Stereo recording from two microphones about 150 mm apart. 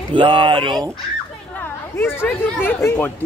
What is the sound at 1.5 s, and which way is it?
Speech, 15° left (ahead or behind).